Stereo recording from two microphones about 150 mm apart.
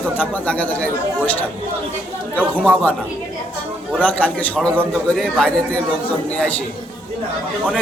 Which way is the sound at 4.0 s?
10° left (ahead or behind).